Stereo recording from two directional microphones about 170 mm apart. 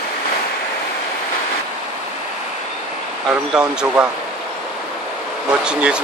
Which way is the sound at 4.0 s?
5° right (ahead or behind).